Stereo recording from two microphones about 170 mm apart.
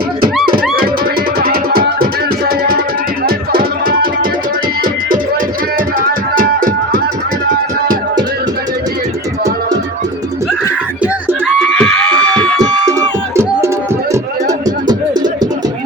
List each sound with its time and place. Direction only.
1.4 s music: 60° right (ahead or behind)
3.2 s music: 60° right (ahead or behind)
6.0 s music: 55° right (ahead or behind)
11.0 s a sound: 10° right (ahead or behind)
11.6 s a sound: 5° left (ahead or behind)
12.9 s music: 15° right (ahead or behind)